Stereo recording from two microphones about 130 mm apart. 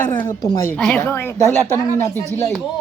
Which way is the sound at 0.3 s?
30° left (ahead or behind).